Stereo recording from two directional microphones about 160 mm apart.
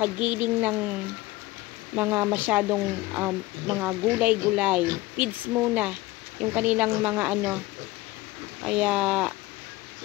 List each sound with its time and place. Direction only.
0.0 s speech: 10° right (ahead or behind)
2.0 s speech: 10° right (ahead or behind)
8.6 s speech: 5° right (ahead or behind)